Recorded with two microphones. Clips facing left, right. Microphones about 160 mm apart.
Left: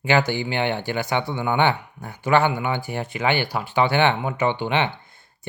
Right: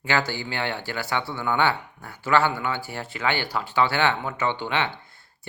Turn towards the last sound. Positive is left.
turn(degrees=20)  # may be behind; listen again after turning